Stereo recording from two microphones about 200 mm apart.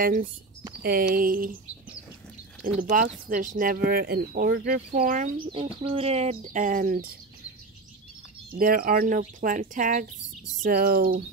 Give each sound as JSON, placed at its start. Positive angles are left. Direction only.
{"t": 0.0, "sound": "speech", "side_deg": -45}
{"t": 2.6, "sound": "speech", "side_deg": -45}
{"t": 5.5, "sound": "speech", "side_deg": -30}
{"t": 8.5, "sound": "speech", "side_deg": -45}